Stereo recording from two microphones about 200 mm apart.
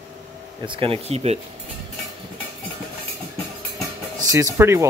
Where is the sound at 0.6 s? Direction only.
25° right (ahead or behind).